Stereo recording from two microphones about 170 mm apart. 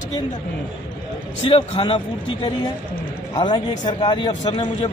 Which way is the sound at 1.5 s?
30° left (ahead or behind).